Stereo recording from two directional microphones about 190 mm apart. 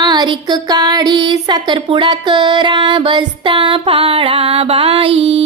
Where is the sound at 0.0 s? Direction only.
20° right (ahead or behind).